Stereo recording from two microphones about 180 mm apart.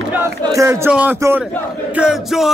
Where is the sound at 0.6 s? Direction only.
15° right (ahead or behind).